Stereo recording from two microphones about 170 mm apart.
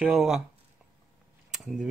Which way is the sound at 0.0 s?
Centre (ahead or behind).